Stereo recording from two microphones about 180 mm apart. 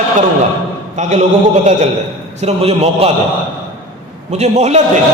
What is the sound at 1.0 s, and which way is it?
Speech, 45° right (ahead or behind).